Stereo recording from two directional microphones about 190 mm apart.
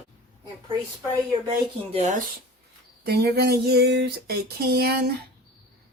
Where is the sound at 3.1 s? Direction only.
55° right (ahead or behind).